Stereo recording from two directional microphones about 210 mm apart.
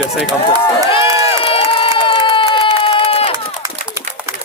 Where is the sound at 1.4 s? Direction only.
25° left (ahead or behind).